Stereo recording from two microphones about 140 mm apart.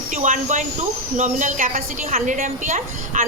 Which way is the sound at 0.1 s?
65° right (ahead or behind).